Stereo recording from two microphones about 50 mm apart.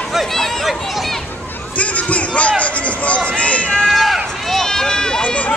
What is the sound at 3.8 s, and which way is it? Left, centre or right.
Run, centre.